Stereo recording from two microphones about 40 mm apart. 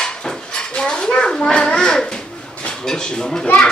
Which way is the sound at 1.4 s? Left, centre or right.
Centre.